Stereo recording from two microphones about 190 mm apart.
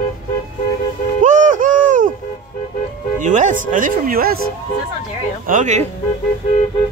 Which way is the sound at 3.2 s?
40° right (ahead or behind).